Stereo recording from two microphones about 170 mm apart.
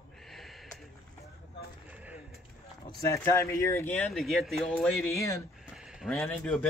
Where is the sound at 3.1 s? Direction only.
15° left (ahead or behind).